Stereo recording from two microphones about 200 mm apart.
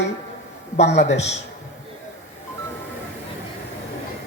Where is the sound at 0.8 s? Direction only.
60° left (ahead or behind).